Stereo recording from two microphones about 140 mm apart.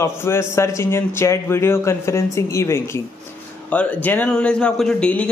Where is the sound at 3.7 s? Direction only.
10° left (ahead or behind).